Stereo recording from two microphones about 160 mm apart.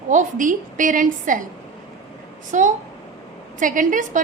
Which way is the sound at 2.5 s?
50° right (ahead or behind).